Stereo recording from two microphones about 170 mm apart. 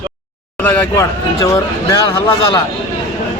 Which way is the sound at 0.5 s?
10° left (ahead or behind).